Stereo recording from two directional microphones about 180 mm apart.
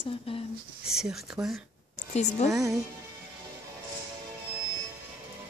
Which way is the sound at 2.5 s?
15° right (ahead or behind).